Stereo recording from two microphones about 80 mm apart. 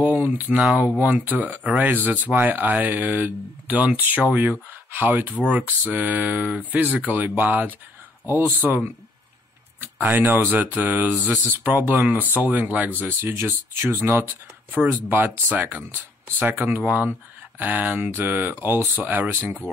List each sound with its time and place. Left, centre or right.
0.0 s speech: right